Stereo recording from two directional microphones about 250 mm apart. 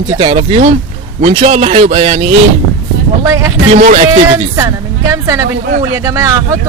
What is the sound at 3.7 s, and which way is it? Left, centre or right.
Speech, right.